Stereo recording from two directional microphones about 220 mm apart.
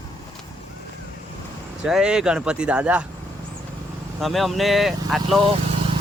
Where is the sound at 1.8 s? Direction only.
5° right (ahead or behind).